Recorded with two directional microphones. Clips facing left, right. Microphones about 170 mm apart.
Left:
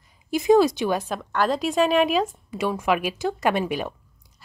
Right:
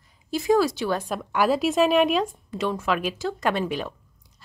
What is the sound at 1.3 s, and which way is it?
A woman's voice, 10° right (ahead or behind).